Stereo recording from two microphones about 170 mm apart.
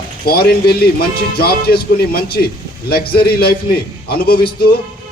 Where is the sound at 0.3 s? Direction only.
65° left (ahead or behind).